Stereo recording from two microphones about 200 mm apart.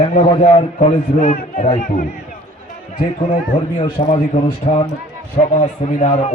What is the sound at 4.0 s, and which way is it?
Speech, 30° left (ahead or behind).